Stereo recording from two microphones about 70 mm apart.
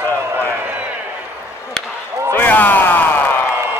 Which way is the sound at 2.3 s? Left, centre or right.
Left.